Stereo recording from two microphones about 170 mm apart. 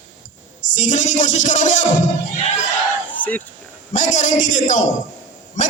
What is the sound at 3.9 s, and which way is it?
Speech, 45° left (ahead or behind).